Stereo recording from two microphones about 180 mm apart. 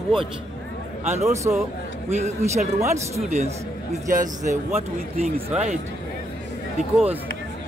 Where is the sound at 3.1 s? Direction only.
40° right (ahead or behind).